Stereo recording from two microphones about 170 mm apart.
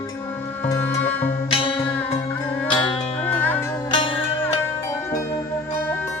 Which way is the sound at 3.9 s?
30° left (ahead or behind).